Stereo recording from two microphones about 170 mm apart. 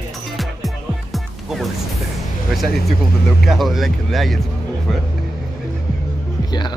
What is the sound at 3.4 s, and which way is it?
Speech, centre (ahead or behind).